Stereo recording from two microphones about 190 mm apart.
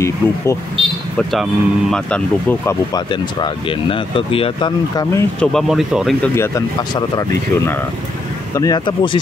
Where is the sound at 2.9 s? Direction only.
25° left (ahead or behind).